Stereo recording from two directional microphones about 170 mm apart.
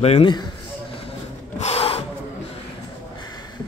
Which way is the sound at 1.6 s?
35° left (ahead or behind).